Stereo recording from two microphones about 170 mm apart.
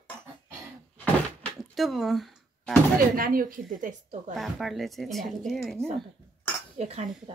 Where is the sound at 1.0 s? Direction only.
5° left (ahead or behind).